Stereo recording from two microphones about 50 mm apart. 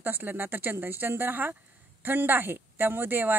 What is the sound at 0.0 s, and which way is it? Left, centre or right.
Speech, right.